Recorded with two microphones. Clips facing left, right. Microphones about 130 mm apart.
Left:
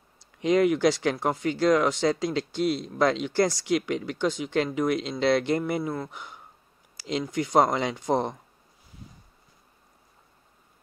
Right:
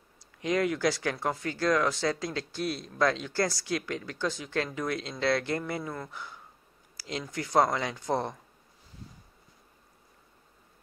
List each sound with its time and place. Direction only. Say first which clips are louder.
0.4 s speech: left 6 dB; 20° left (ahead or behind)